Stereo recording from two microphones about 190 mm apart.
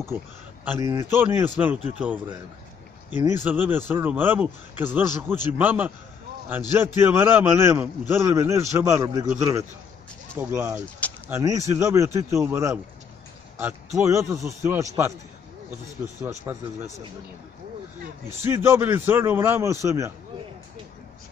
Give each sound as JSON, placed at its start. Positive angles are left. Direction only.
{"t": 0.7, "sound": "speech", "side_deg": -15}
{"t": 16.5, "sound": "speech", "side_deg": -20}
{"t": 18.4, "sound": "speech", "side_deg": -15}